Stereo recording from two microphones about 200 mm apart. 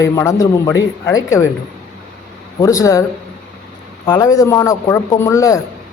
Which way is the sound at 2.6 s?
15° left (ahead or behind).